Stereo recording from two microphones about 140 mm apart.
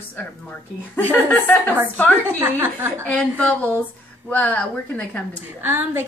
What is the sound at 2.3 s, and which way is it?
Speech, 15° right (ahead or behind).